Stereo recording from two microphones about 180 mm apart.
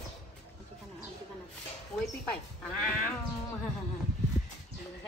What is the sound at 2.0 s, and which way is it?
A child's voice, 5° left (ahead or behind).